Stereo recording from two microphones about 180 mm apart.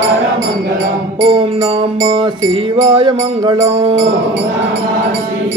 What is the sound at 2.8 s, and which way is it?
Music, 25° right (ahead or behind).